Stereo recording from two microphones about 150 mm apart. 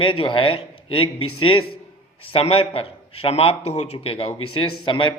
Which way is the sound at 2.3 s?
40° left (ahead or behind).